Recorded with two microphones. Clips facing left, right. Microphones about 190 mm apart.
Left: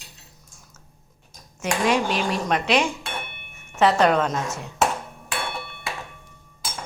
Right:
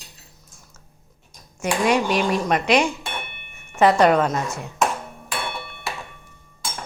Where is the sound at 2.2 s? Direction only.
10° right (ahead or behind).